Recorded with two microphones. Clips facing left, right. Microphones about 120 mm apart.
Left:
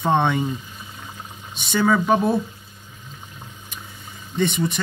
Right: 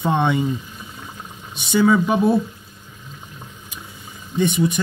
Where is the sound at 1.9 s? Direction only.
5° right (ahead or behind).